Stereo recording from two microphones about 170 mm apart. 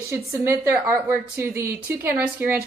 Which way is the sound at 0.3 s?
15° right (ahead or behind).